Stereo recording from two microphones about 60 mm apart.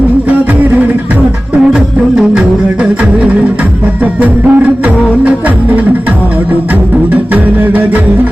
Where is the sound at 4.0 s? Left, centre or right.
Right.